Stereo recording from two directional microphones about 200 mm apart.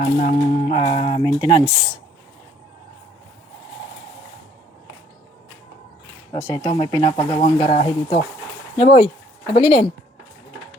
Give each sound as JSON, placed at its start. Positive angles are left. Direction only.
{"t": 0.0, "sound": "speech", "side_deg": 40}
{"t": 1.4, "sound": "speech", "side_deg": -25}
{"t": 6.3, "sound": "speech", "side_deg": 20}